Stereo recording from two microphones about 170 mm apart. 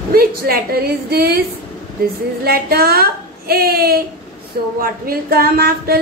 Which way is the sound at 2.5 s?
65° right (ahead or behind).